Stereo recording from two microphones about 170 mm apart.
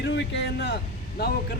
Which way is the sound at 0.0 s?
90° left.